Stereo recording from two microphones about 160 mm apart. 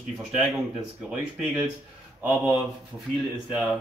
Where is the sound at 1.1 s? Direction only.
5° right (ahead or behind).